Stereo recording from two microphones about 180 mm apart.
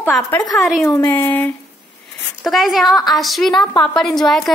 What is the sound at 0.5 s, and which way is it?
Speech, centre (ahead or behind).